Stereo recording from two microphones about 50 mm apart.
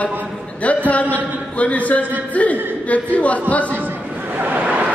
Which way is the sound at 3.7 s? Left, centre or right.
Right.